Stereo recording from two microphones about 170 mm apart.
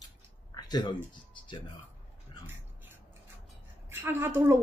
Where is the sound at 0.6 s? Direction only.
25° left (ahead or behind).